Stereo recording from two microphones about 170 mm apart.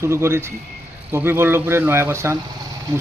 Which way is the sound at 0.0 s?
15° right (ahead or behind).